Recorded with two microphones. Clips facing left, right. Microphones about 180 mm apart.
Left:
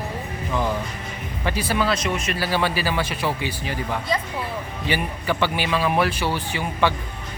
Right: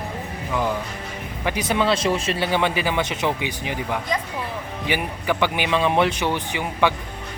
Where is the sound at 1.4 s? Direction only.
20° right (ahead or behind).